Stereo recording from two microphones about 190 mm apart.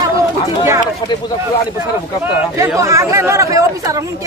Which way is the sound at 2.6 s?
15° right (ahead or behind).